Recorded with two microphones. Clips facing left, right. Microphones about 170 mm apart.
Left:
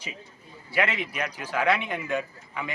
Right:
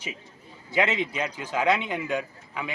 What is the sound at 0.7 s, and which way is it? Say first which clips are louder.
A man's voice: right 2 dB; 20° right (ahead or behind).